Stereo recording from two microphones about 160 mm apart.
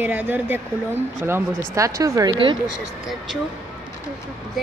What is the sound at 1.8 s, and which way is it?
Speech, 20° right (ahead or behind).